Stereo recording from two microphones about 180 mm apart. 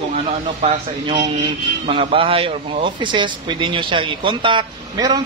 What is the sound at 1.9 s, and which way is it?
Speech, 30° right (ahead or behind).